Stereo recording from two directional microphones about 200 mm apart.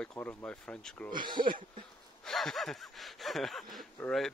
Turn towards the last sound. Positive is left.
turn(degrees=5)  # may be behind; listen again after turning